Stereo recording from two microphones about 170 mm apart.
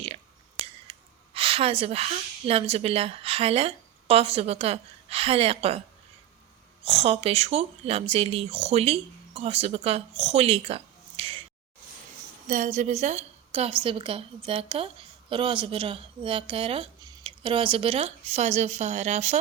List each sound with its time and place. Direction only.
0.6 s speech: 35° right (ahead or behind)
6.8 s speech: 35° right (ahead or behind)
12.5 s a woman's voice: 45° right (ahead or behind)